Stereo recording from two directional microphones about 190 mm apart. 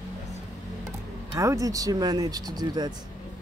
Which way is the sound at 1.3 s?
15° right (ahead or behind).